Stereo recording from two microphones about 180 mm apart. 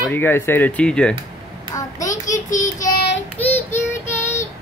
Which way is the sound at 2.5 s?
45° left (ahead or behind).